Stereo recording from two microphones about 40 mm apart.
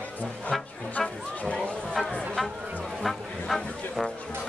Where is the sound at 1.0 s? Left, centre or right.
Left.